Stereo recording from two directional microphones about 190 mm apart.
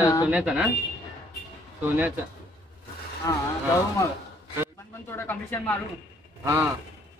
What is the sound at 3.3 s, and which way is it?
Speech, 15° left (ahead or behind).